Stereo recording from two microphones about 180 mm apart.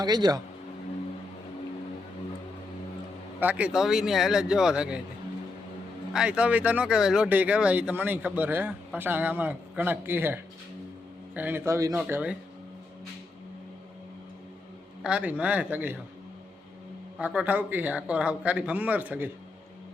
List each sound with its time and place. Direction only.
0.0 s speech: 20° right (ahead or behind)
3.4 s speech: 10° right (ahead or behind)
6.1 s speech: 5° right (ahead or behind)
15.0 s speech: 5° right (ahead or behind)
17.2 s speech: 5° right (ahead or behind)